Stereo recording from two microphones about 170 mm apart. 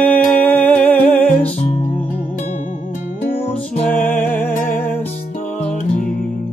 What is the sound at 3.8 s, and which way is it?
Music, 10° left (ahead or behind).